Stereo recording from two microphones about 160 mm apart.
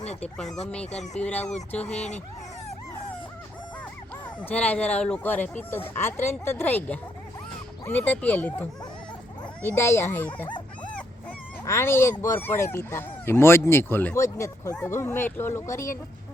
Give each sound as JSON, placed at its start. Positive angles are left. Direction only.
{"t": 0.0, "sound": "oink", "side_deg": 45}
{"t": 0.3, "sound": "speech", "side_deg": 0}
{"t": 0.9, "sound": "speech", "side_deg": 45}
{"t": 1.7, "sound": "speech", "side_deg": 10}
{"t": 2.0, "sound": "speech", "side_deg": 45}
{"t": 4.4, "sound": "speech", "side_deg": 10}
{"t": 11.6, "sound": "speech", "side_deg": 15}